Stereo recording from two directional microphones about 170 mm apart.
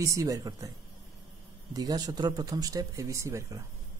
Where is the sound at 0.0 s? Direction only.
20° right (ahead or behind).